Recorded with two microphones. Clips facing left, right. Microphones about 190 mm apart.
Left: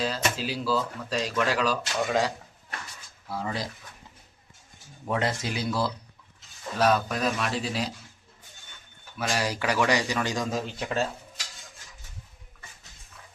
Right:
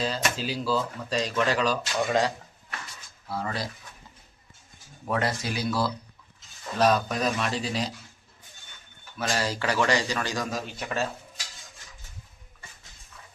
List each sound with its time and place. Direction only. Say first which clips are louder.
0.0 s speech: even; centre (ahead or behind)
3.3 s speech: even; 15° left (ahead or behind)
5.0 s speech: even; 20° left (ahead or behind)
6.7 s speech: right 1 dB; 5° left (ahead or behind)
9.1 s speech: even; 10° left (ahead or behind)